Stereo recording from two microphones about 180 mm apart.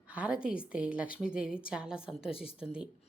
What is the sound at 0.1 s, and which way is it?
A woman's voice, 5° right (ahead or behind).